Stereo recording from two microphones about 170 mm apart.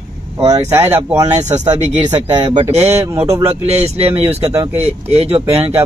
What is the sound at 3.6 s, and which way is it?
Speech, 35° right (ahead or behind).